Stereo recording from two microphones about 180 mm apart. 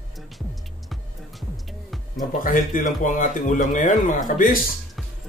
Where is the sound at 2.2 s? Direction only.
45° left (ahead or behind).